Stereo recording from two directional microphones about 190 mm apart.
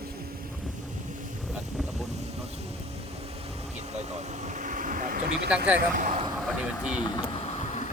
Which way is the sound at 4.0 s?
40° right (ahead or behind).